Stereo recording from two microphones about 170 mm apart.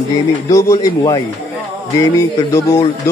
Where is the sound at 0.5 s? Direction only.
20° left (ahead or behind).